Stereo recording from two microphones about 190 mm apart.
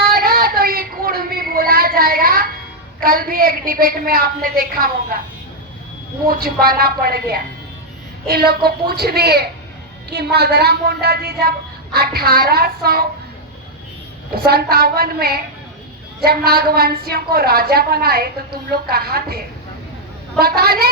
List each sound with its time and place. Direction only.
0.0 s a sound: 50° right (ahead or behind)
3.0 s a woman's voice: 50° right (ahead or behind)
6.4 s a woman's voice: 50° right (ahead or behind)
14.3 s a woman's voice: 55° right (ahead or behind)